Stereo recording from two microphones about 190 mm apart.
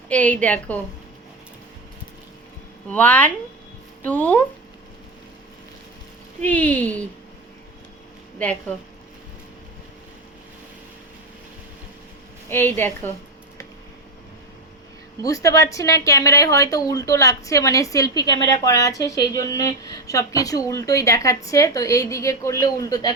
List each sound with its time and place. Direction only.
0.1 s speech: 5° left (ahead or behind)
2.9 s speech: 10° left (ahead or behind)
6.4 s speech: 10° left (ahead or behind)
8.4 s speech: 10° left (ahead or behind)
12.5 s speech: 10° left (ahead or behind)
15.2 s speech: 15° left (ahead or behind)